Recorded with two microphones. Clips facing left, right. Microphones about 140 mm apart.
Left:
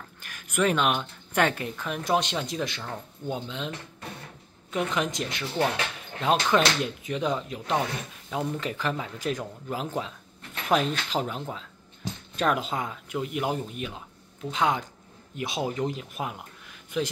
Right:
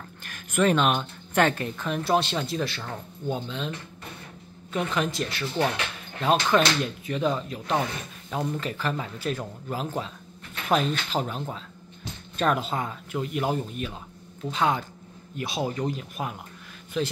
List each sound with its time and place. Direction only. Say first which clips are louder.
0.2 s speech: right 2 dB; 10° left (ahead or behind)
4.7 s speech: right 1 dB; 15° left (ahead or behind)